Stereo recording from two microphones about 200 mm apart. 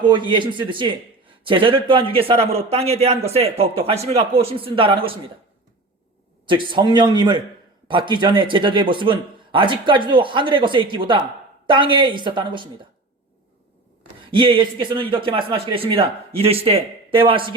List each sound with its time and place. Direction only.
0.0 s speech: 25° right (ahead or behind)
6.4 s speech: 25° right (ahead or behind)
14.3 s speech: 25° right (ahead or behind)